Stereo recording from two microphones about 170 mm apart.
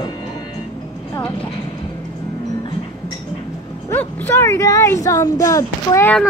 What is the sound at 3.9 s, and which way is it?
Speech, 10° left (ahead or behind).